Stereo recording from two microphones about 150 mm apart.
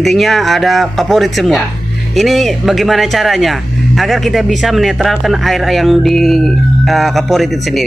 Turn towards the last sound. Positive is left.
turn(degrees=0)  # may be behind; listen again after turning